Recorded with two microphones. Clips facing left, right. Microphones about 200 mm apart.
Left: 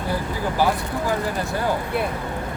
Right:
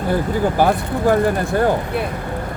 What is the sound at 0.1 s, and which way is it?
Speech, 55° right (ahead or behind).